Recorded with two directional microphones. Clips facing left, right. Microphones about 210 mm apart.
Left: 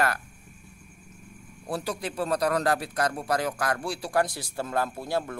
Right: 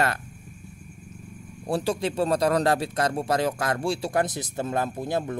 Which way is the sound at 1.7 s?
25° right (ahead or behind).